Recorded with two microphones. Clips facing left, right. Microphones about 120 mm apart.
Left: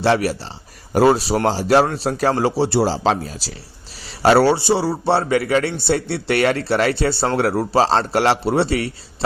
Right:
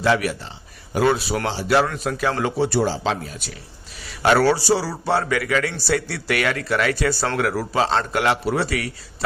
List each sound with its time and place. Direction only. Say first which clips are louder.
0.0 s a man's voice: left 3 dB; 35° left (ahead or behind)
2.9 s a man's voice: left 5 dB; 40° left (ahead or behind)